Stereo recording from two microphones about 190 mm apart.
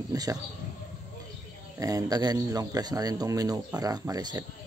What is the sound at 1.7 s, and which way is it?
Speech, 20° right (ahead or behind).